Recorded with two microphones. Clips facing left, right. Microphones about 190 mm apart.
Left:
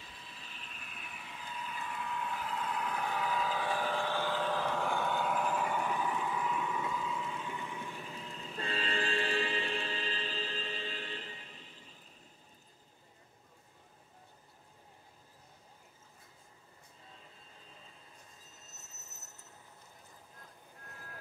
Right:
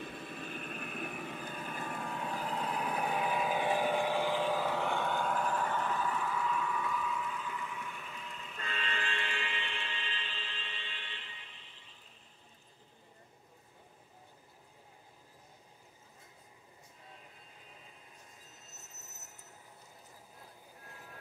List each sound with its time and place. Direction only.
0.0 s vehicle: 55° right (ahead or behind); by 12.0 s 40° left (ahead or behind)
20.8 s reversing beeps: centre (ahead or behind)